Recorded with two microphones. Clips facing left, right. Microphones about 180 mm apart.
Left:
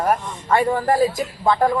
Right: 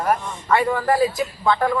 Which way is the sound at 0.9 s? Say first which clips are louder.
Even; 45° left (ahead or behind).